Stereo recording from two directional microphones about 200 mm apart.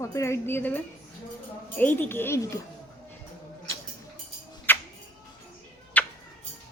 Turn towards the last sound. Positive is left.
turn(degrees=5)  # may be behind; listen again after turning